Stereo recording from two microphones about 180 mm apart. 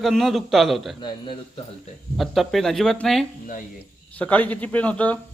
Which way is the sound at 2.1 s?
Centre (ahead or behind).